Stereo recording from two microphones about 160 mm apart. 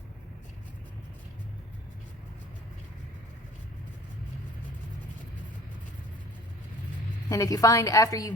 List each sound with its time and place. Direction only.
7.3 s a woman's voice: 20° left (ahead or behind)